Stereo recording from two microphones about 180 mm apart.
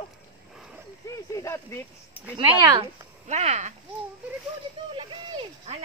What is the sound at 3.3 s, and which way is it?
Speech, 40° right (ahead or behind).